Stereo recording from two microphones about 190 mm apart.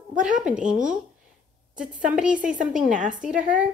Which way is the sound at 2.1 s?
5° right (ahead or behind).